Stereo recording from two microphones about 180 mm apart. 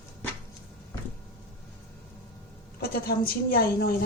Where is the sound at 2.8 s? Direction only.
55° left (ahead or behind).